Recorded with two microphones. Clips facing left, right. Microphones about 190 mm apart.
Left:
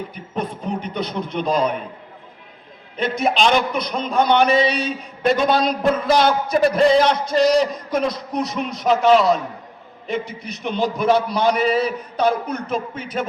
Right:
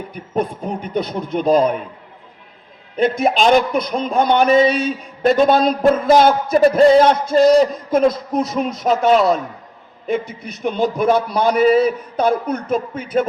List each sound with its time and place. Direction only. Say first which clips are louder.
0.1 s a man's voice: right 5 dB; 45° right (ahead or behind)
3.0 s a man's voice: right 4 dB; 45° right (ahead or behind)